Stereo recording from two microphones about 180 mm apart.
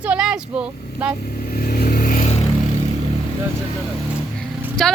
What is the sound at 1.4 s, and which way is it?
Vehicle, 55° left (ahead or behind).